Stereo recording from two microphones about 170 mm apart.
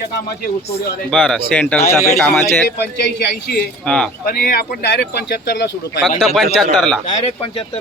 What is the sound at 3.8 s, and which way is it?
Speech, 5° left (ahead or behind).